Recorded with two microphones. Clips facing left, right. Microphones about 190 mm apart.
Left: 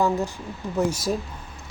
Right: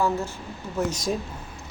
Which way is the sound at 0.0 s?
15° left (ahead or behind).